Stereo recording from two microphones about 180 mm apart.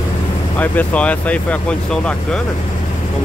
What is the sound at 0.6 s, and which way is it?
Speech, 10° left (ahead or behind).